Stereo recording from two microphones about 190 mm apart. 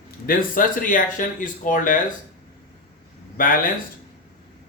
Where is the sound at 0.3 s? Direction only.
45° left (ahead or behind).